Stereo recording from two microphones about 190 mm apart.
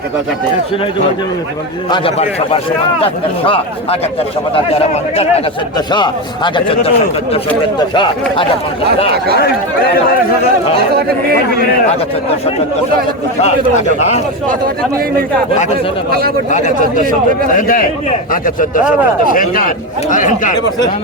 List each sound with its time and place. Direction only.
1.9 s a man's voice: 30° left (ahead or behind)
9.4 s speech: 55° left (ahead or behind)
10.9 s speech: 50° right (ahead or behind)
11.9 s a man's voice: 30° left (ahead or behind)
14.4 s speech: 50° right (ahead or behind)
16.5 s a man's voice: 40° left (ahead or behind)